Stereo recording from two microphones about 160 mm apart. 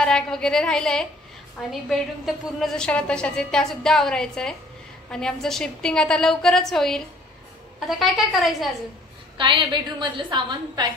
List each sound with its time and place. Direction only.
0.0 s a woman's voice: 5° left (ahead or behind)
9.4 s a woman's voice: 30° right (ahead or behind)